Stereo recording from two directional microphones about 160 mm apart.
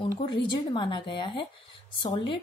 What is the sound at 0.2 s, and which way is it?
Speech, 30° left (ahead or behind).